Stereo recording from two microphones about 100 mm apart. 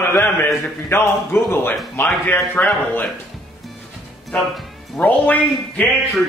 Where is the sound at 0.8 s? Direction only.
25° left (ahead or behind).